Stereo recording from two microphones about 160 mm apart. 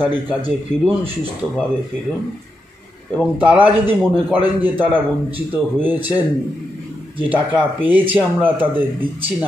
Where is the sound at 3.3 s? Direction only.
10° right (ahead or behind).